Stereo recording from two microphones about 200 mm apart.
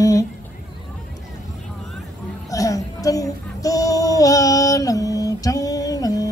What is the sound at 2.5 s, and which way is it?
Child singing, 15° left (ahead or behind).